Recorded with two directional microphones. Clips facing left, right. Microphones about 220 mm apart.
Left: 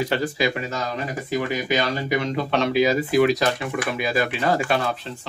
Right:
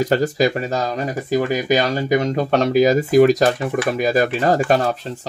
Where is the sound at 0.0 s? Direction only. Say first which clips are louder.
Right 6 dB; 40° right (ahead or behind).